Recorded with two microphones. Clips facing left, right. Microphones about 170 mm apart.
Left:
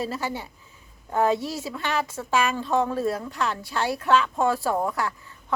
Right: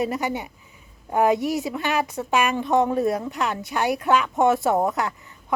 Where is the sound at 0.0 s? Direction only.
20° right (ahead or behind).